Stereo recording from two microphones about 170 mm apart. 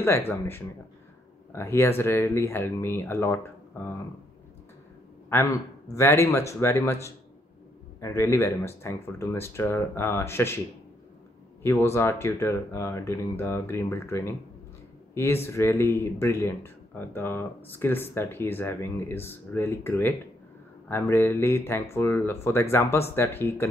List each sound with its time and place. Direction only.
1.5 s speech: 15° left (ahead or behind)
5.3 s speech: 15° left (ahead or behind)
11.6 s speech: 15° left (ahead or behind)